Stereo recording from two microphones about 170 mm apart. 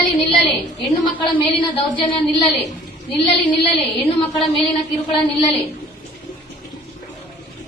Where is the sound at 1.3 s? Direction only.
30° left (ahead or behind).